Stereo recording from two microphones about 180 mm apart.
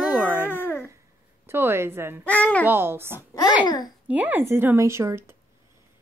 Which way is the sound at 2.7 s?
10° right (ahead or behind).